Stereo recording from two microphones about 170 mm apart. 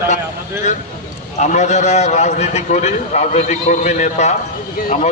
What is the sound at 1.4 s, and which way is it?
A man's voice, 45° left (ahead or behind).